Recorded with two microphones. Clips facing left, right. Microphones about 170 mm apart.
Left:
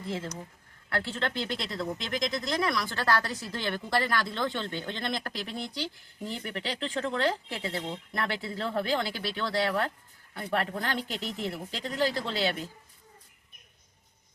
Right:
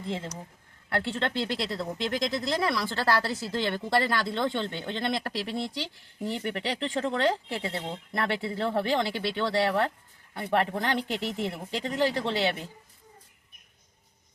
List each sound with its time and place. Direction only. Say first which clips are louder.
0.9 s speech: right 2 dB; 30° right (ahead or behind)